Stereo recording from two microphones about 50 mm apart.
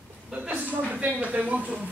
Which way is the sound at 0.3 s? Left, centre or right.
Right.